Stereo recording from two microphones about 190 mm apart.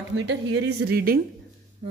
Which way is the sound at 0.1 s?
70° right (ahead or behind).